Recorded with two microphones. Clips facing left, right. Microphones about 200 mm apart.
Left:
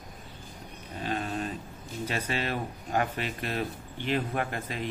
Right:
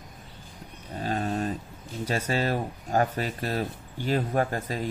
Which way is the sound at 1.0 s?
40° right (ahead or behind).